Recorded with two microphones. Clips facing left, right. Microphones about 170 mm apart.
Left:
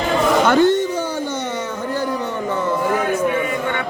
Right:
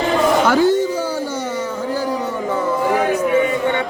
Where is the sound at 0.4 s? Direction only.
5° right (ahead or behind).